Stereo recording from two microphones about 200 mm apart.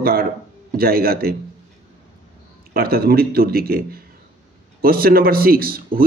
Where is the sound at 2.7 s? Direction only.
50° right (ahead or behind).